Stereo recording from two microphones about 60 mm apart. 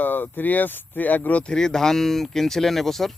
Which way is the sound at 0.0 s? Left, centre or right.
Left.